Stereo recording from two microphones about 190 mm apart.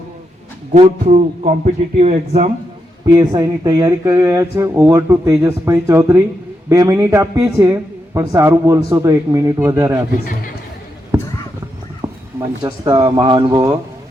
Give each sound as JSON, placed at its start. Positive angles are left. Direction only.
{"t": 0.7, "sound": "a man's voice", "side_deg": -35}
{"t": 3.2, "sound": "a man's voice", "side_deg": -20}
{"t": 11.1, "sound": "basketball bounce", "side_deg": -15}
{"t": 12.0, "sound": "a sound", "side_deg": -10}
{"t": 12.6, "sound": "speech", "side_deg": -20}